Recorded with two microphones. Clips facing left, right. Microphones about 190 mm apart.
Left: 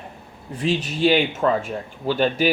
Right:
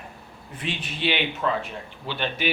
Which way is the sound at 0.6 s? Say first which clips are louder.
Left 10 dB; 40° left (ahead or behind).